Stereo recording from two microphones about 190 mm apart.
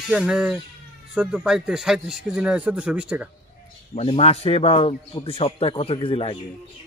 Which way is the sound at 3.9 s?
30° left (ahead or behind).